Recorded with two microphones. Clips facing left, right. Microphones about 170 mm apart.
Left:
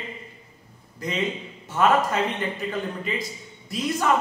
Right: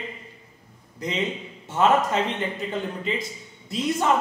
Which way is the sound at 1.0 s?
20° right (ahead or behind).